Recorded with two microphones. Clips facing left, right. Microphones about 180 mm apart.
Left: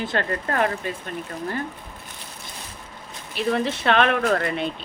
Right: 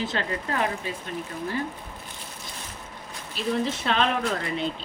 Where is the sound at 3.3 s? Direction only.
65° left (ahead or behind).